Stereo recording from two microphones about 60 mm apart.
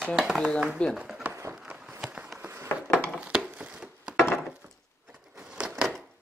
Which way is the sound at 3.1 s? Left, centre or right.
Centre.